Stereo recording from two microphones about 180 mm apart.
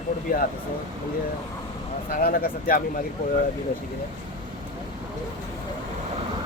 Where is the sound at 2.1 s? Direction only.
55° left (ahead or behind).